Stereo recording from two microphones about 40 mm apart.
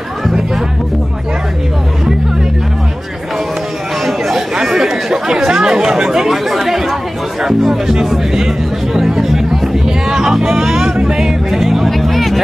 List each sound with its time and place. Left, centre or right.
4.7 s chatter: centre
7.4 s speech: centre
9.0 s music: centre
10.4 s speech: centre
11.0 s music: centre
11.5 s speech: centre